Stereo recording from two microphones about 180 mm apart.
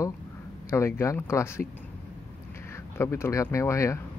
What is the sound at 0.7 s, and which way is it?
Speech, 15° left (ahead or behind).